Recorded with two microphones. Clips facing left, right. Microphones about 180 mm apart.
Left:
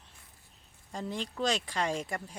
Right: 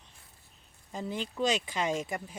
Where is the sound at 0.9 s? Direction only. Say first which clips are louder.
Right 1 dB; 5° right (ahead or behind).